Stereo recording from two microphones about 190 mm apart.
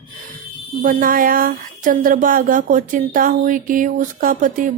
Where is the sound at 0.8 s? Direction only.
45° right (ahead or behind).